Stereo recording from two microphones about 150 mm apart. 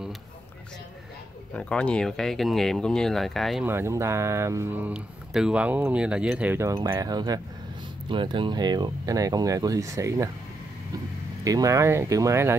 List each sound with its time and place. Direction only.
1.5 s speech: 10° left (ahead or behind)
3.6 s speech: 15° right (ahead or behind)
11.4 s speech: 25° right (ahead or behind)